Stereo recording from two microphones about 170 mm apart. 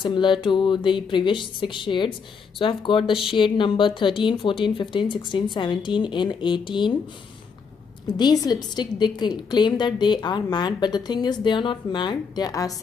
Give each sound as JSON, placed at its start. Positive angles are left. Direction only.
{"t": 0.0, "sound": "a woman's voice", "side_deg": 30}
{"t": 8.2, "sound": "a woman's voice", "side_deg": 25}